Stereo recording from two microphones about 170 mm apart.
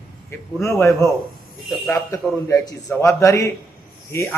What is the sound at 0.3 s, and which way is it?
Speech, 15° left (ahead or behind).